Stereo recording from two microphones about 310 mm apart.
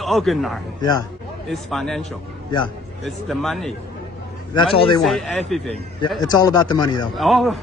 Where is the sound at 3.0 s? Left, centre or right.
Centre.